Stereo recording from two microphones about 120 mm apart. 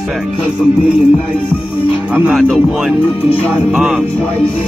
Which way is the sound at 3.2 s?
50° left (ahead or behind).